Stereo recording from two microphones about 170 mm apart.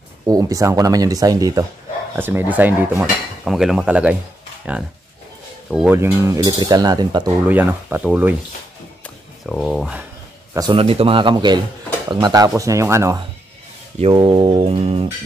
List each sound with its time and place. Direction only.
0.3 s speech: 20° right (ahead or behind)
5.9 s speech: 15° right (ahead or behind)
7.4 s speech: 10° right (ahead or behind)
9.0 s a sound: 5° left (ahead or behind)
10.5 s speech: 25° right (ahead or behind)
13.9 s speech: 35° right (ahead or behind)